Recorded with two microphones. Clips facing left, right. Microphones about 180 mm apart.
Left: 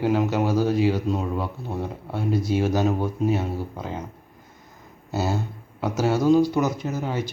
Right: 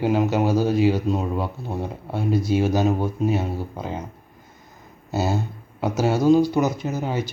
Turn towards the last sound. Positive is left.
turn(degrees=-20)  # may be behind; listen again after turning